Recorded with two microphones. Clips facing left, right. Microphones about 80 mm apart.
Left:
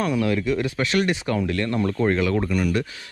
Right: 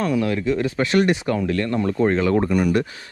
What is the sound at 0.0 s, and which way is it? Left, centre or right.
Speech, right.